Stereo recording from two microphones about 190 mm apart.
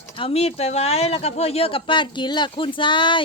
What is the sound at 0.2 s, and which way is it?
Speech, 30° left (ahead or behind).